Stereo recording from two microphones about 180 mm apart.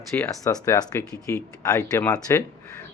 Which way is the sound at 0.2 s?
15° left (ahead or behind).